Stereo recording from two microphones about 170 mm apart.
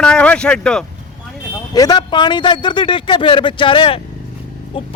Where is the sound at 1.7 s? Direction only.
25° left (ahead or behind).